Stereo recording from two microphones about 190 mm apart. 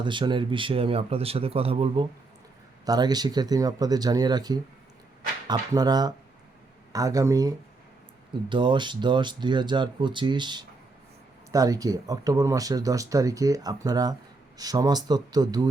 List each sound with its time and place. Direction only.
0.0 s speech: 25° right (ahead or behind)